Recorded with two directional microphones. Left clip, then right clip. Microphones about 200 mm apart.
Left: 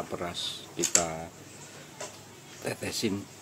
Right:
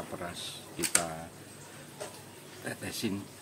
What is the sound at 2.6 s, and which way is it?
Speech, 25° left (ahead or behind).